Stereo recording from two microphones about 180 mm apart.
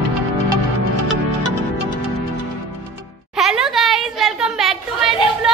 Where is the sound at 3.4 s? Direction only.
Centre (ahead or behind).